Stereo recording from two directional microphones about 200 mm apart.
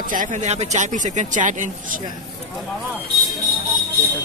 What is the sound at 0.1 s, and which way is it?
Speech, 40° right (ahead or behind).